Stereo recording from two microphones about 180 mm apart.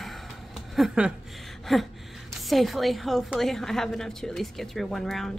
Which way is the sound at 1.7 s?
Centre (ahead or behind).